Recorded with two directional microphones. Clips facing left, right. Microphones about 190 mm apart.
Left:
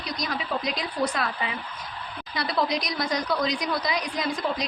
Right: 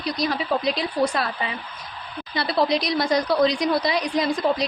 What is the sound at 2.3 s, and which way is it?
A woman's voice, 30° right (ahead or behind).